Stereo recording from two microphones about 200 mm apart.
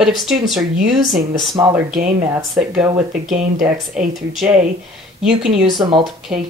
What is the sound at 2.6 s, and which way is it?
Speech, 5° right (ahead or behind).